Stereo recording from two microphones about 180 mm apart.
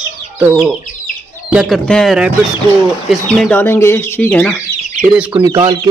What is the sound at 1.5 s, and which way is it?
Speech, centre (ahead or behind).